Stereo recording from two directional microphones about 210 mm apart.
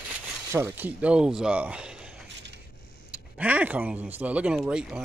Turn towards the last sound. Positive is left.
turn(degrees=-5)  # may be behind; listen again after turning